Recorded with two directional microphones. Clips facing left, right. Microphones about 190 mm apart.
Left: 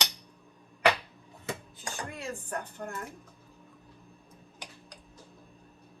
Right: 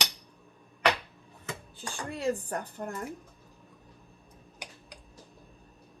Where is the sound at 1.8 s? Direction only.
35° right (ahead or behind).